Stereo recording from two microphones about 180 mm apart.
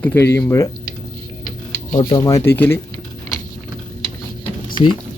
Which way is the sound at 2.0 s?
20° left (ahead or behind).